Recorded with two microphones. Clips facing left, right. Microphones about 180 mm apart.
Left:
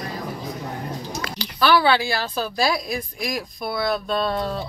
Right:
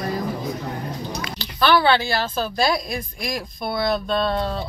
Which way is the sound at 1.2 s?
20° right (ahead or behind).